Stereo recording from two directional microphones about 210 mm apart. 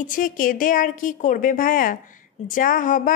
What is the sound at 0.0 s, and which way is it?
A woman's voice, 40° left (ahead or behind).